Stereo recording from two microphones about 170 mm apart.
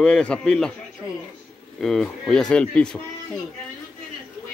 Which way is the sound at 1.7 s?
Centre (ahead or behind).